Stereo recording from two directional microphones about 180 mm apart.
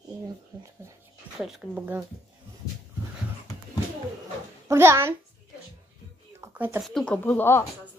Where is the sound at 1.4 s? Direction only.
Centre (ahead or behind).